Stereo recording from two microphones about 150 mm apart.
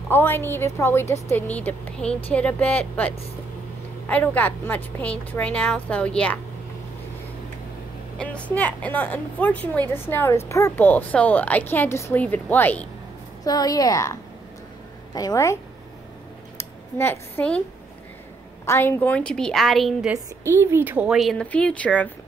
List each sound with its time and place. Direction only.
0.1 s a woman's voice: 15° left (ahead or behind)
8.2 s a woman's voice: 10° left (ahead or behind)
13.4 s a woman's voice: 25° left (ahead or behind)
15.1 s a woman's voice: 20° left (ahead or behind)
16.5 s a sound: 15° left (ahead or behind)
18.7 s speech: 15° left (ahead or behind); by 20.2 s centre (ahead or behind)
20.4 s speech: 15° right (ahead or behind); by 22.1 s 10° left (ahead or behind)